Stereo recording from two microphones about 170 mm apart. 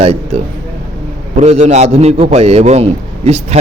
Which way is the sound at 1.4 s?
40° right (ahead or behind).